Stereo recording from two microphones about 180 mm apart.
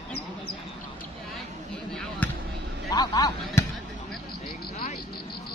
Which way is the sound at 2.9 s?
20° left (ahead or behind).